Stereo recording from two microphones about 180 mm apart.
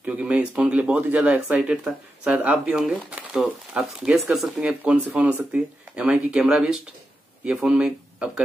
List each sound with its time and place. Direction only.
0.0 s speech: 5° right (ahead or behind)